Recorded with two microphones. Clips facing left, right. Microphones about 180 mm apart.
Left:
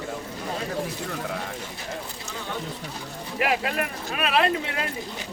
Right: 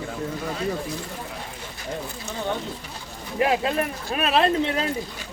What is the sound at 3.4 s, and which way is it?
Speech, 25° right (ahead or behind).